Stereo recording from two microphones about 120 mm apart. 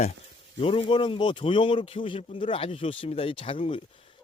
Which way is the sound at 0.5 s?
50° left (ahead or behind).